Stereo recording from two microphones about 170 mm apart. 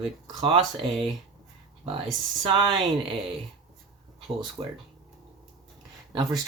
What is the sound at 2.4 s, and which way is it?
Speech, 30° right (ahead or behind).